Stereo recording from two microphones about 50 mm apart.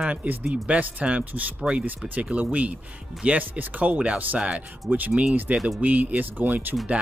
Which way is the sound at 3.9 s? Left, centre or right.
Centre.